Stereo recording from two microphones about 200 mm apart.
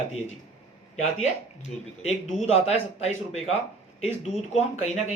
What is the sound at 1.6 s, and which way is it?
Speech, 35° left (ahead or behind).